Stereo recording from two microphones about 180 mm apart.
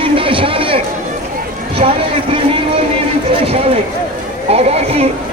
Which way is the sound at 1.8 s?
35° right (ahead or behind).